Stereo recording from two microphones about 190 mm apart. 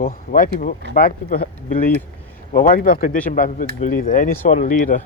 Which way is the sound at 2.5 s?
45° left (ahead or behind).